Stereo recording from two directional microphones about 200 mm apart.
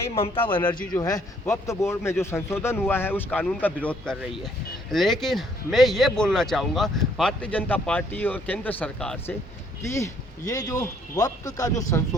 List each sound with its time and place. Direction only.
0.1 s a man's voice: 30° left (ahead or behind)